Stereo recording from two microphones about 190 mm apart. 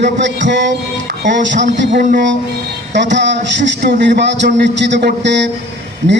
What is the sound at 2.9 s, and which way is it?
A man's voice, 70° right (ahead or behind).